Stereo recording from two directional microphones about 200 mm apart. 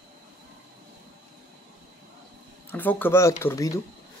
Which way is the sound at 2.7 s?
10° left (ahead or behind).